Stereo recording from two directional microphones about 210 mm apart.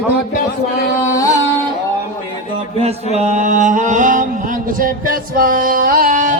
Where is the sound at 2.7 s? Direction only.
30° right (ahead or behind).